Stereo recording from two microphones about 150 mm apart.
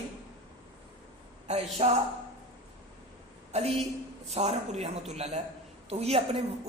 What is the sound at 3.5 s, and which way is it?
A woman's voice, 45° right (ahead or behind).